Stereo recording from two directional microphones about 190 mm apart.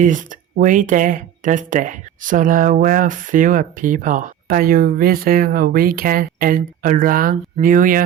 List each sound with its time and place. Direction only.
0.0 s speech: 45° right (ahead or behind)